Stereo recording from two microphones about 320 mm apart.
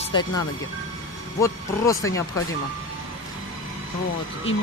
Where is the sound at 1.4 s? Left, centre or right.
Centre.